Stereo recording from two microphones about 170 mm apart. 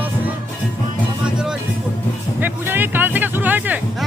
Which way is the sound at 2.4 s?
10° right (ahead or behind).